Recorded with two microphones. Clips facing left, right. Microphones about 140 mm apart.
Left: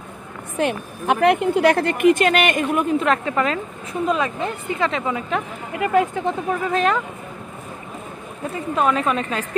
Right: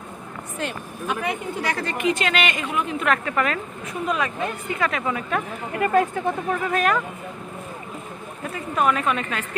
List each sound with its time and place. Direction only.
0.6 s speech: 60° left (ahead or behind)
3.0 s speech: 25° left (ahead or behind)
8.7 s a woman's voice: 25° left (ahead or behind)